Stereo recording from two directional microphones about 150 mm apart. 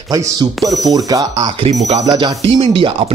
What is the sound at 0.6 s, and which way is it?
Speech, centre (ahead or behind).